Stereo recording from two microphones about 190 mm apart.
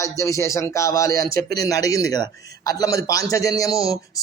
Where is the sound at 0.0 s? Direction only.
15° left (ahead or behind).